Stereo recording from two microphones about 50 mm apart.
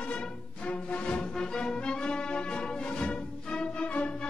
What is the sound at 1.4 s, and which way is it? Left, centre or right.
Music, centre.